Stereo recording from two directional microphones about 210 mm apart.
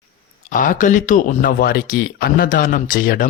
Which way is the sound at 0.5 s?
40° left (ahead or behind).